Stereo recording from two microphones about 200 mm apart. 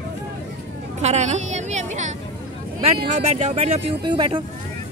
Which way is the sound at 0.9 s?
35° right (ahead or behind).